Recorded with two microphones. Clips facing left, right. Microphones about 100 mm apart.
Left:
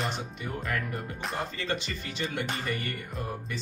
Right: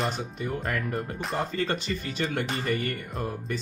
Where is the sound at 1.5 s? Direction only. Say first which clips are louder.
Right 5 dB; 40° right (ahead or behind).